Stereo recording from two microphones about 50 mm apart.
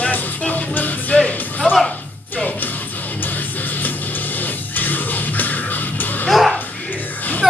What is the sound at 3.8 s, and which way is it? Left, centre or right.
Music, left.